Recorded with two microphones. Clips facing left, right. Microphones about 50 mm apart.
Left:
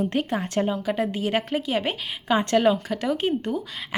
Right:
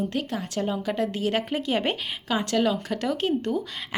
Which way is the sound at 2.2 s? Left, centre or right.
Left.